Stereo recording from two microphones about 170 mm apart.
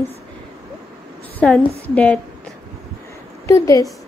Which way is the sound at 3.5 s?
20° left (ahead or behind).